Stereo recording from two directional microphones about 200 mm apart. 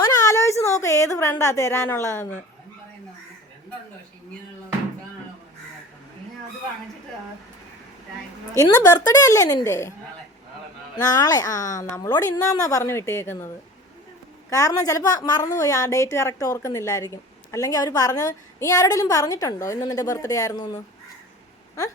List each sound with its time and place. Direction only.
0.0 s a sound: 15° left (ahead or behind)
0.8 s a woman's voice: 15° left (ahead or behind)
8.5 s a woman's voice: 20° left (ahead or behind)
10.9 s a woman's voice: 20° left (ahead or behind)
14.5 s a woman's voice: 15° left (ahead or behind)